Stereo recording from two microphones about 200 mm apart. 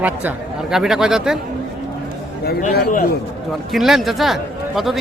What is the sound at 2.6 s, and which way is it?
Speech, 45° left (ahead or behind).